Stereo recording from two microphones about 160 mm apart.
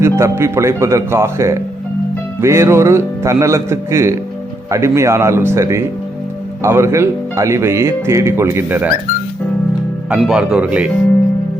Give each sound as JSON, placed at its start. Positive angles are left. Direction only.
{"t": 0.0, "sound": "speech", "side_deg": -15}
{"t": 10.1, "sound": "speech", "side_deg": -5}